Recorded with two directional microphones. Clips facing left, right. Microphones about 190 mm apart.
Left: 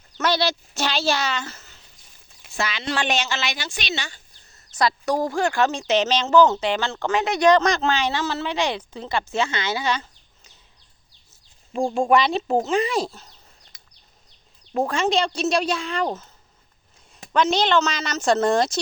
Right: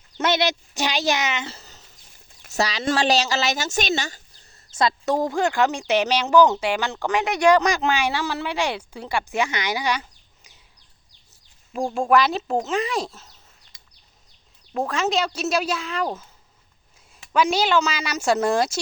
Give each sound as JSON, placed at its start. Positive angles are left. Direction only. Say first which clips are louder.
{"t": 0.2, "sound": "a woman's voice", "louder": "right 1 dB", "side_deg": -20}
{"t": 1.5, "sound": "a sound", "louder": "right 3 dB", "side_deg": -35}
{"t": 2.5, "sound": "speech", "louder": "right 4 dB", "side_deg": -40}
{"t": 4.7, "sound": "speech", "louder": "even", "side_deg": -25}
{"t": 11.9, "sound": "speech", "louder": "even", "side_deg": 0}
{"t": 14.7, "sound": "speech", "louder": "left 2 dB", "side_deg": 0}
{"t": 17.3, "sound": "speech", "louder": "even", "side_deg": -10}